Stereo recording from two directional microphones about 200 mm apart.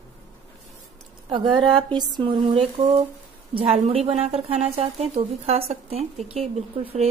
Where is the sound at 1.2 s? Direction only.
25° right (ahead or behind).